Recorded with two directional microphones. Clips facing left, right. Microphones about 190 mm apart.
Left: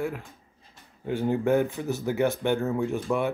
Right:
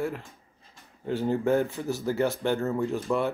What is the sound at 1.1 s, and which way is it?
Speech, 15° left (ahead or behind).